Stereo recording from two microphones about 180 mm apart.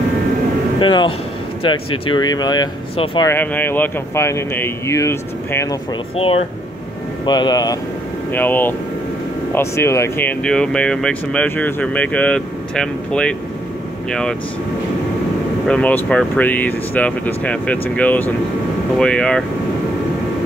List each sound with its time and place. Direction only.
0.7 s speech: 25° left (ahead or behind)
3.3 s speech: 10° left (ahead or behind)
7.2 s speech: 25° left (ahead or behind)
8.3 s speech: 10° left (ahead or behind)
15.7 s speech: 5° left (ahead or behind)